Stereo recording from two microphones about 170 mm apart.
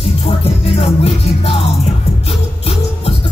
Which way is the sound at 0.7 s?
35° left (ahead or behind).